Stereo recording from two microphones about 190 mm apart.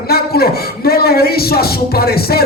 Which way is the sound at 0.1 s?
55° left (ahead or behind).